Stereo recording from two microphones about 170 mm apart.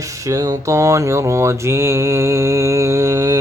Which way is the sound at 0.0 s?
20° right (ahead or behind).